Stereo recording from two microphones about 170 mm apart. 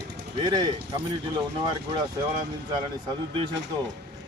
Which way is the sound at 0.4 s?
25° right (ahead or behind).